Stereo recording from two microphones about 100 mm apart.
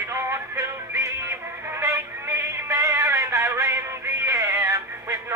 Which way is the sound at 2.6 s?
30° right (ahead or behind).